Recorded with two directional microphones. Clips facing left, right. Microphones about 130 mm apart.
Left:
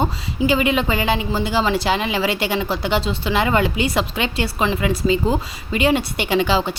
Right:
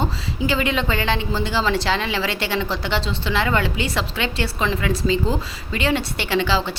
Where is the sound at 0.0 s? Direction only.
15° left (ahead or behind).